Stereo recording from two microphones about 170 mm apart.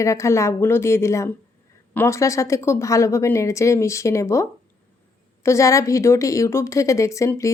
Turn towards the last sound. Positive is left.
turn(degrees=20)  # may be behind; listen again after turning